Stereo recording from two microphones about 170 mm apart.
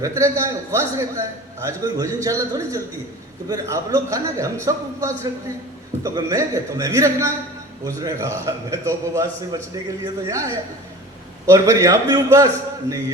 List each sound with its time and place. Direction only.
0.0 s a man's voice: 20° right (ahead or behind)